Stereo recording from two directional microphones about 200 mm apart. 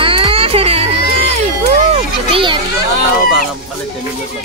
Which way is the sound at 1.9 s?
25° right (ahead or behind).